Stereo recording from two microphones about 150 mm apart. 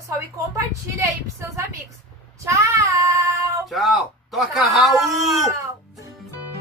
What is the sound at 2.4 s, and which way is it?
Child singing, 20° right (ahead or behind).